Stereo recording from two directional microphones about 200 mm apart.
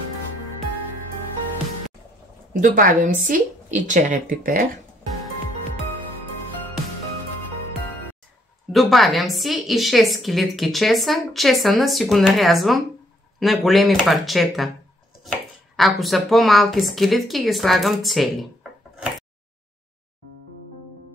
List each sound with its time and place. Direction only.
2.6 s a woman's voice: 45° right (ahead or behind)
8.7 s a woman's voice: centre (ahead or behind)
15.7 s a woman's voice: centre (ahead or behind)